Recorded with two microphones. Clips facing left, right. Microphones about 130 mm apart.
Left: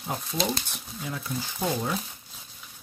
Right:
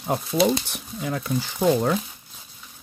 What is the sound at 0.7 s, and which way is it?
Speech, 70° right (ahead or behind).